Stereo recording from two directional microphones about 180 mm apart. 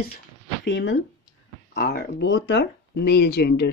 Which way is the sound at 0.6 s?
80° left.